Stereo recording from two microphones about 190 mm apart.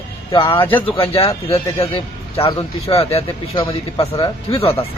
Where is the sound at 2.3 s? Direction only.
30° left (ahead or behind).